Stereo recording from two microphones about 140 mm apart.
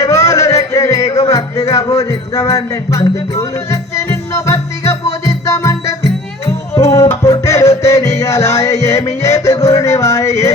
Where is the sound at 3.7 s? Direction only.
20° left (ahead or behind).